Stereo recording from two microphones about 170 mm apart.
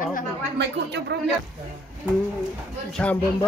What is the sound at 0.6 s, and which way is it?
Speech, 80° right.